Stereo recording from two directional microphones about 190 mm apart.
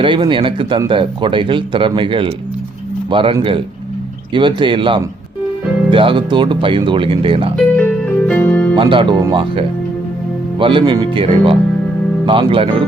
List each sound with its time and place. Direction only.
0.0 s speech: 25° right (ahead or behind)
7.5 s music: 5° left (ahead or behind)
8.7 s speech: 25° right (ahead or behind)